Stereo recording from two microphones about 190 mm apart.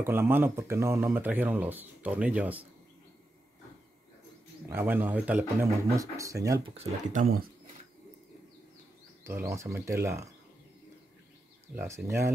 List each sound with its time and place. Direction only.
0.0 s speech: 10° right (ahead or behind)
4.6 s speech: 10° right (ahead or behind)
6.7 s speech: 35° right (ahead or behind)
9.2 s speech: 15° right (ahead or behind)
11.7 s speech: 10° right (ahead or behind)